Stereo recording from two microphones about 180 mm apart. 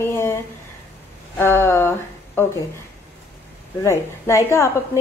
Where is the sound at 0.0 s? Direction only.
15° left (ahead or behind).